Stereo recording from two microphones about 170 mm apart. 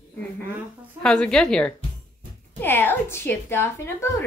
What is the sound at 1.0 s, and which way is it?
A woman's voice, 5° left (ahead or behind).